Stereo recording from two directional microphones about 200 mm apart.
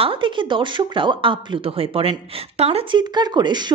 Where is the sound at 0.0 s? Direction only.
25° right (ahead or behind).